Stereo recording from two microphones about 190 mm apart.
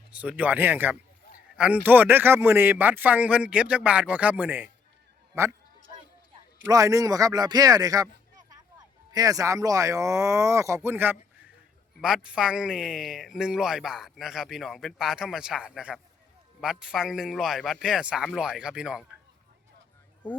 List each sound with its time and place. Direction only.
0.1 s a man's voice: 5° right (ahead or behind)
6.7 s a man's voice: 15° right (ahead or behind)